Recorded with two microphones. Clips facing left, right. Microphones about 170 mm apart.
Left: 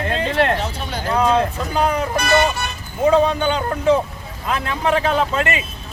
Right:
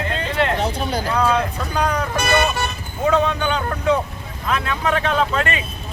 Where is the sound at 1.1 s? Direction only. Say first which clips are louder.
Left 4 dB; 25° left (ahead or behind).